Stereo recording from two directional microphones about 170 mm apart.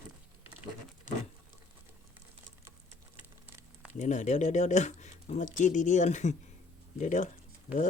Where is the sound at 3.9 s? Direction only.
45° left (ahead or behind).